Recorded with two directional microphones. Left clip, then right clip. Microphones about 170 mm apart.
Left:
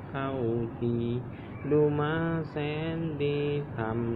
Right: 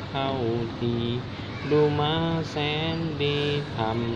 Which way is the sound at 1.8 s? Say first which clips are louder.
Right 4 dB; 20° right (ahead or behind).